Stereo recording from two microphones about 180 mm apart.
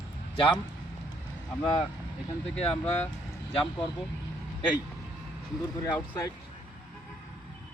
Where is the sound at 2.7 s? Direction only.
40° left (ahead or behind).